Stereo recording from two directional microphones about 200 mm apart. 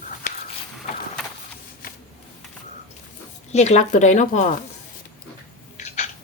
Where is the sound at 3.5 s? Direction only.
35° left (ahead or behind).